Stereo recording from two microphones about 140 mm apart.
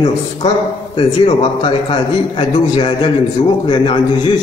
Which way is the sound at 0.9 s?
40° left (ahead or behind).